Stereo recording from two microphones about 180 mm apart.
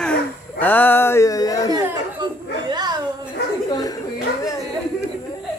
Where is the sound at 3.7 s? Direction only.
20° left (ahead or behind).